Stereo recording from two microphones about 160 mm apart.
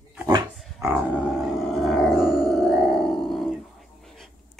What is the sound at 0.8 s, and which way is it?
Roar, 5° right (ahead or behind).